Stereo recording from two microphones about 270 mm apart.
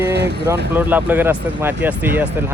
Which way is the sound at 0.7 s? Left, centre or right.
Centre.